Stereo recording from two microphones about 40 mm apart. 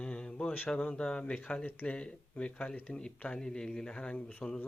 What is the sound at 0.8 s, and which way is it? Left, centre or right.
Speech, left.